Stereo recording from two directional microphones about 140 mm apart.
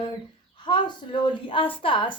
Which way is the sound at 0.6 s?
35° left (ahead or behind).